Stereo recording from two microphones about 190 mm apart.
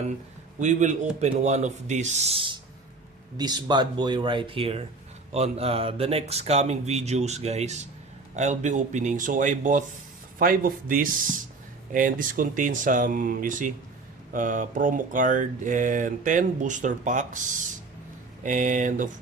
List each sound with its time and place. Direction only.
0.6 s speech: 40° right (ahead or behind)
18.4 s speech: 40° right (ahead or behind)